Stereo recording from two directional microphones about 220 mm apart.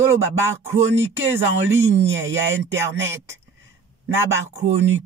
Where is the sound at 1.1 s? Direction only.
60° right (ahead or behind).